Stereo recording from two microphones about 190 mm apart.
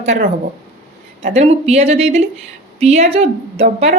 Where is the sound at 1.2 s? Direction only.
35° right (ahead or behind).